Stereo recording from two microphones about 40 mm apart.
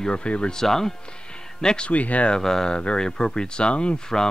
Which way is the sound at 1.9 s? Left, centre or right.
Left.